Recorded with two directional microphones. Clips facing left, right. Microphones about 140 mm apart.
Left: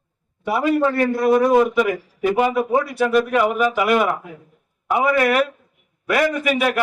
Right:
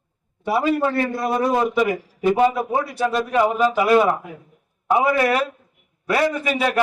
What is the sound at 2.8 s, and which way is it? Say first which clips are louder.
A man's voice: left 4 dB; 25° right (ahead or behind).